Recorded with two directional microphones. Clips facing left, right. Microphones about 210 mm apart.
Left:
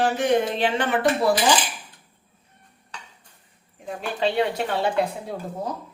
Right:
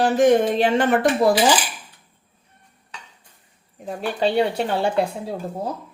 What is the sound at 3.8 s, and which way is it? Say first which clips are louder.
Speech: right 3 dB; 35° right (ahead or behind).